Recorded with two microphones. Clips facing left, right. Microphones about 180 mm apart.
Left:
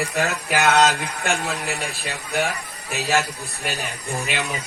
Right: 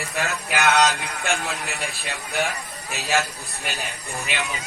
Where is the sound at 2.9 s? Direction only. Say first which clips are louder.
Left 5 dB; centre (ahead or behind).